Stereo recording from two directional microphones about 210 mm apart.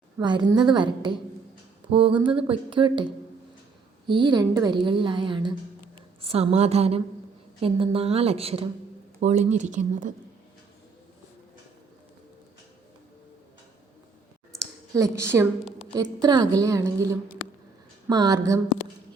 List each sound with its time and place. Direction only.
0.2 s a woman's voice: 20° right (ahead or behind); by 10.2 s 35° right (ahead or behind)
14.9 s a woman's voice: 15° right (ahead or behind)
16.2 s a woman's voice: 20° right (ahead or behind)
18.1 s a woman's voice: 20° right (ahead or behind)